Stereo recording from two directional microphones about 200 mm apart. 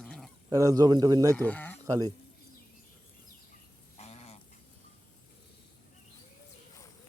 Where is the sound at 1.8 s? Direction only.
20° right (ahead or behind).